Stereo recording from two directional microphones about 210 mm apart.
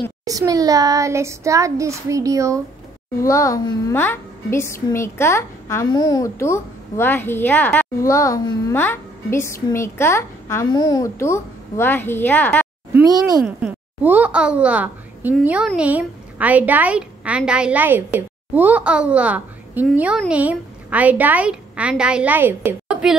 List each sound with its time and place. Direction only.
0.2 s a woman's voice: 15° right (ahead or behind)
3.3 s a woman's voice: 15° left (ahead or behind)
12.9 s a woman's voice: 15° right (ahead or behind)